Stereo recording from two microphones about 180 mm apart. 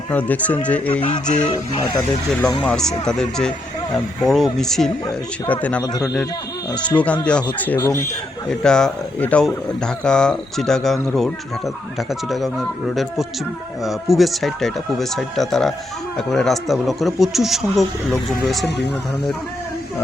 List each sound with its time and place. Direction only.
0.1 s speech: 10° left (ahead or behind)
1.0 s speech: 40° left (ahead or behind)
2.3 s speech: 5° left (ahead or behind)